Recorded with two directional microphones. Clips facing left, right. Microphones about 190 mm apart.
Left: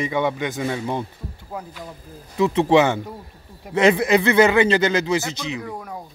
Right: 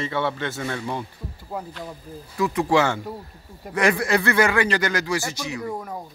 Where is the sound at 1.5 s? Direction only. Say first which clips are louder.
Right 2 dB; centre (ahead or behind).